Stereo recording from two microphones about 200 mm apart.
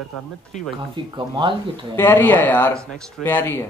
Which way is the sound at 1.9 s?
10° left (ahead or behind).